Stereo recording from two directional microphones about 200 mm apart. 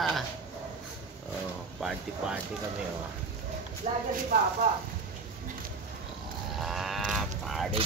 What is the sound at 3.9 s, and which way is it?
Speech, 35° right (ahead or behind).